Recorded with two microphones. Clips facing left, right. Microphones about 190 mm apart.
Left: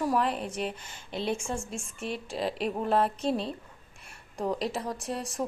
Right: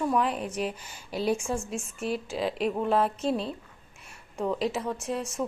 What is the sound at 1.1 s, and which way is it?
Speech, 5° right (ahead or behind).